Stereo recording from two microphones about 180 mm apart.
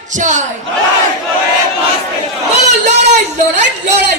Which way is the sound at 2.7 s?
40° right (ahead or behind).